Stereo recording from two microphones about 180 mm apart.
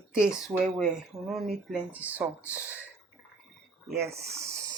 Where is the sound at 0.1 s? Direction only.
5° right (ahead or behind).